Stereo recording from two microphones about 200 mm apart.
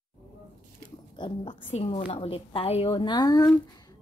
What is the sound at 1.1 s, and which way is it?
A woman's voice, 25° left (ahead or behind).